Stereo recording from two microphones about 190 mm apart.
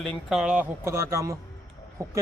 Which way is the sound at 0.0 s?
Centre (ahead or behind).